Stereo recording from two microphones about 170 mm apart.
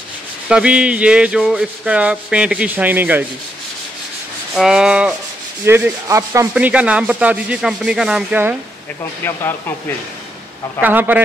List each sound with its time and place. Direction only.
0.5 s rub: 5° right (ahead or behind)
4.6 s rub: 5° right (ahead or behind)
5.7 s rub: 15° right (ahead or behind)
6.5 s rub: 5° right (ahead or behind)
9.2 s speech: 15° left (ahead or behind)
10.8 s rub: 10° right (ahead or behind)